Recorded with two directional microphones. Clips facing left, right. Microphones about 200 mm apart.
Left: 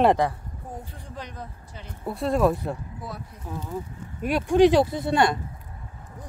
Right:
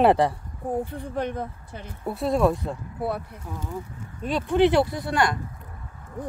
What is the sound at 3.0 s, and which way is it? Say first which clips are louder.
Speech: right 13 dB; 60° right (ahead or behind).